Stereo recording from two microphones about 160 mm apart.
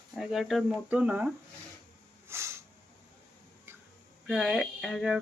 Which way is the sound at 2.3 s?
15° right (ahead or behind).